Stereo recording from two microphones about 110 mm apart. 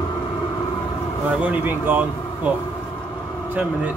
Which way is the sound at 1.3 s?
15° right (ahead or behind).